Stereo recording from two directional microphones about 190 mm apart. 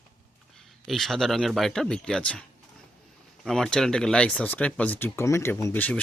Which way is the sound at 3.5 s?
5° left (ahead or behind).